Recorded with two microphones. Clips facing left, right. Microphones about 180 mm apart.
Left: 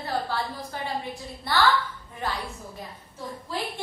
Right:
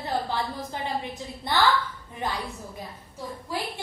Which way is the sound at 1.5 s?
20° right (ahead or behind).